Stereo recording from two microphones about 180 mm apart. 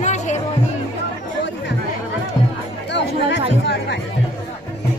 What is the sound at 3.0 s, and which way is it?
Chatter, 75° left (ahead or behind).